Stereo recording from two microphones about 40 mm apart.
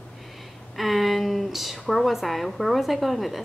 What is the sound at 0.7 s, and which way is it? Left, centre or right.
A woman's voice, centre.